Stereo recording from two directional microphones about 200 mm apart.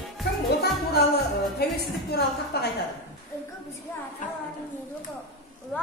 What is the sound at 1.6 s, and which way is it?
Speech, 55° left (ahead or behind).